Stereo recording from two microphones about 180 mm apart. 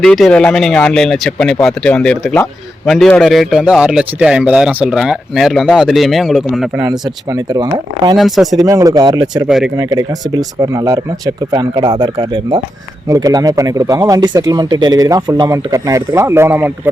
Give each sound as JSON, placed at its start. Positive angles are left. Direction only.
{"t": 0.0, "sound": "a man's voice", "side_deg": 5}
{"t": 6.8, "sound": "speech", "side_deg": -20}
{"t": 8.2, "sound": "a man's voice", "side_deg": 0}
{"t": 8.5, "sound": "speech", "side_deg": -20}
{"t": 9.5, "sound": "a man's voice", "side_deg": -5}
{"t": 9.7, "sound": "speech", "side_deg": -20}